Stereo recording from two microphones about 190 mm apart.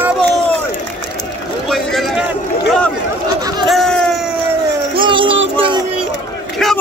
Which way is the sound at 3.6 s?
Centre (ahead or behind).